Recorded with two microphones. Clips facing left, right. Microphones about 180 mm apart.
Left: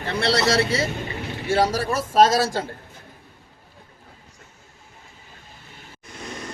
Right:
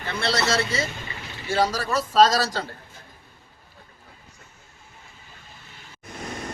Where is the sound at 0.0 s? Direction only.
35° left (ahead or behind).